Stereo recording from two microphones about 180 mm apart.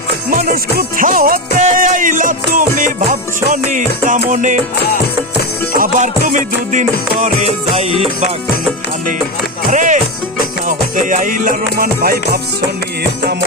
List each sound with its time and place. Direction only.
0.3 s music: 50° right (ahead or behind)
5.7 s music: 45° right (ahead or behind)
9.7 s music: 45° right (ahead or behind)